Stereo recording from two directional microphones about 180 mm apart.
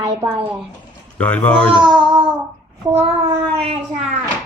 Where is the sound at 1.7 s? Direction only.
25° right (ahead or behind).